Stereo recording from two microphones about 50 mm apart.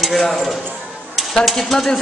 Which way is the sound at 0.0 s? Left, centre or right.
Centre.